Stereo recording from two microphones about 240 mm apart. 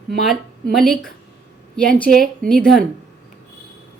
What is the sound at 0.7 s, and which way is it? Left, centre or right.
A woman's voice, centre.